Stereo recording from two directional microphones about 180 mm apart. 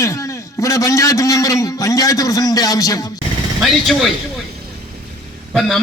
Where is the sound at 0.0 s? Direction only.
15° left (ahead or behind).